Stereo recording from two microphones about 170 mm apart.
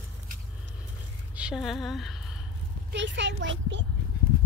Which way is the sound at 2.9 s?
90° right.